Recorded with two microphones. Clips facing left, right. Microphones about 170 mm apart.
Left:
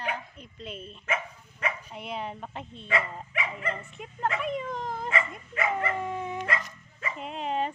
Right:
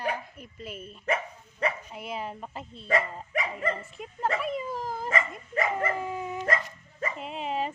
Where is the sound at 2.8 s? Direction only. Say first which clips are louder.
Right 3 dB; 40° right (ahead or behind).